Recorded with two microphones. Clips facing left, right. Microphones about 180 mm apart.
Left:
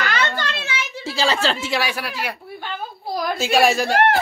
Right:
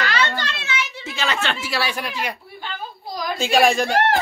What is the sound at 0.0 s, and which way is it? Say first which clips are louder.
Children playing: even; 50° left (ahead or behind).